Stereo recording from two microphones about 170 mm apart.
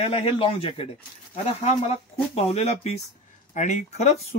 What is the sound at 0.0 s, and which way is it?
Speech, 35° left (ahead or behind).